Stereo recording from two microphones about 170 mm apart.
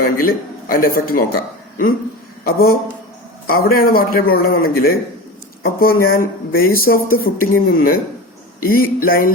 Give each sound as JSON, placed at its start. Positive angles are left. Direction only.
{"t": 0.0, "sound": "a man's voice", "side_deg": 60}